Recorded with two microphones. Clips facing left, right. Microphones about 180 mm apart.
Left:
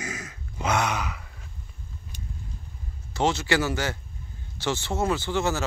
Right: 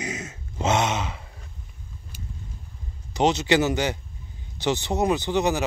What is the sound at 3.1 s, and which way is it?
A man's voice, 20° right (ahead or behind).